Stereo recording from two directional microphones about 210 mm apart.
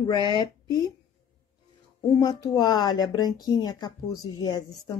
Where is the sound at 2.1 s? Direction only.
20° left (ahead or behind).